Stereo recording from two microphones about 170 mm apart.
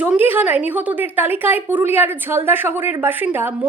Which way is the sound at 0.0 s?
10° right (ahead or behind).